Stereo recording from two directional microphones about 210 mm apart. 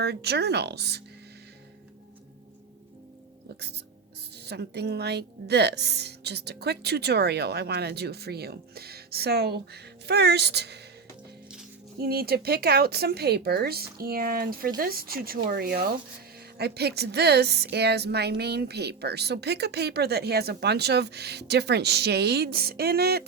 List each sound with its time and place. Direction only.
0.0 s a woman's voice: 50° right (ahead or behind)
4.4 s a woman's voice: 50° right (ahead or behind)
11.9 s a woman's voice: 45° right (ahead or behind)